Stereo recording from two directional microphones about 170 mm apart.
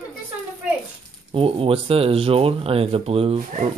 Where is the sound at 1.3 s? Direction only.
35° right (ahead or behind).